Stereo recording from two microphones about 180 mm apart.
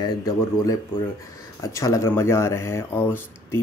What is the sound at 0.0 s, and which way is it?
Speech, 20° left (ahead or behind).